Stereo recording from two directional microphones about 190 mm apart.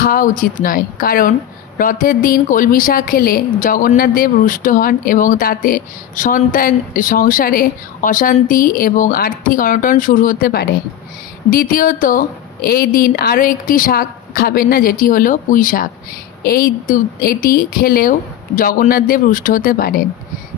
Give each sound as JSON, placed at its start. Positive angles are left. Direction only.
{"t": 0.0, "sound": "a woman's voice", "side_deg": 45}